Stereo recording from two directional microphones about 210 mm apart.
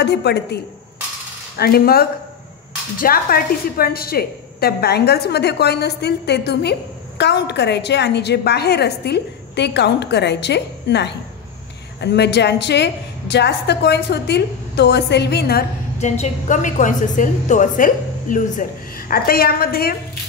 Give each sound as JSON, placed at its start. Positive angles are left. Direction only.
{"t": 0.0, "sound": "a woman's voice", "side_deg": 55}
{"t": 1.6, "sound": "a woman's voice", "side_deg": 45}
{"t": 16.0, "sound": "a woman's voice", "side_deg": 35}